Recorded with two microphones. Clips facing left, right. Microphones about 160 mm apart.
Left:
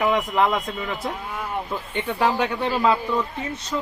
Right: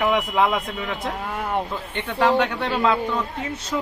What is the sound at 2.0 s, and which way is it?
Speech, 5° left (ahead or behind).